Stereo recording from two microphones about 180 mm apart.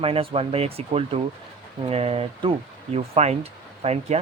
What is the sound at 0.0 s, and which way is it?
Speech, 30° right (ahead or behind).